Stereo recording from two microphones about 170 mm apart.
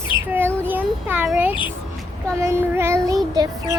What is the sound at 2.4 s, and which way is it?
Child singing, 15° right (ahead or behind).